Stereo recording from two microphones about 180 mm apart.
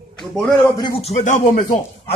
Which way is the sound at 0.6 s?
20° left (ahead or behind).